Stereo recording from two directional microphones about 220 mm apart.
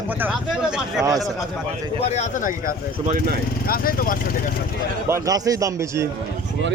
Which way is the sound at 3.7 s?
40° left (ahead or behind).